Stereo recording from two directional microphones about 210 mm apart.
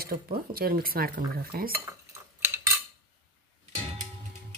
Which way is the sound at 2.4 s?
10° right (ahead or behind).